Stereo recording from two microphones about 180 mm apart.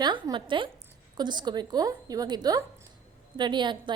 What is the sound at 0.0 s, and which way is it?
A woman's voice, 25° right (ahead or behind).